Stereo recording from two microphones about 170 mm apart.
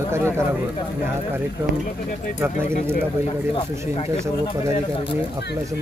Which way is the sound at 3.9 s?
40° left (ahead or behind).